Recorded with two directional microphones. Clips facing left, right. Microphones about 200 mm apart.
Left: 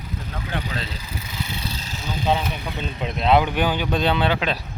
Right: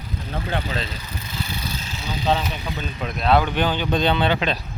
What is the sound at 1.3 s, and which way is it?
Vehicle, 25° left (ahead or behind).